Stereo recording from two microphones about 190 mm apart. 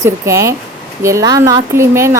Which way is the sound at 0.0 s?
15° right (ahead or behind).